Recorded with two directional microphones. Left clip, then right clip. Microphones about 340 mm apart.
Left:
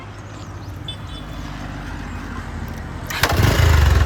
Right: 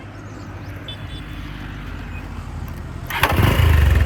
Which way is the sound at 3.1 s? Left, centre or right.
Centre.